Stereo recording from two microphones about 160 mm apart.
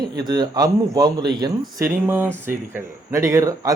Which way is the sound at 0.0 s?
25° right (ahead or behind).